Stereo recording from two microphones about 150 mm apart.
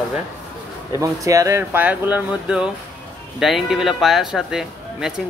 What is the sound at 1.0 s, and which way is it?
Speech, 20° right (ahead or behind).